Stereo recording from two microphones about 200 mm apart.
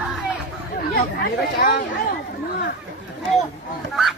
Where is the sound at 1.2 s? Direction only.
50° left (ahead or behind).